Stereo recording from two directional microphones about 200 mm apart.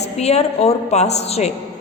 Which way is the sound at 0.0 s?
30° left (ahead or behind).